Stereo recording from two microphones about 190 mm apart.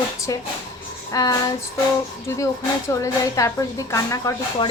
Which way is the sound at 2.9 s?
15° left (ahead or behind).